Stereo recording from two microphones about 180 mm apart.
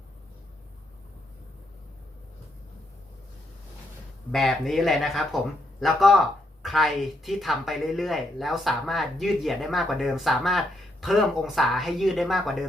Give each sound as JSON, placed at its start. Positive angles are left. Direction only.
{"t": 4.3, "sound": "speech", "side_deg": 0}